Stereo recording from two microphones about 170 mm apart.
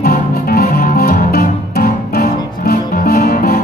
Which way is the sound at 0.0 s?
60° left (ahead or behind).